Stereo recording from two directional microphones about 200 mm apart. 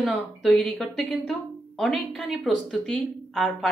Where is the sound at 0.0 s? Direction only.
Centre (ahead or behind).